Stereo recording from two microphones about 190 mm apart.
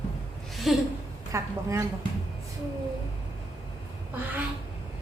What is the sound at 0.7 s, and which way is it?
Speech, centre (ahead or behind).